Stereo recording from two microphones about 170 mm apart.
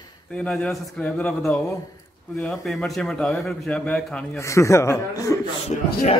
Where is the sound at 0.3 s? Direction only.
5° left (ahead or behind).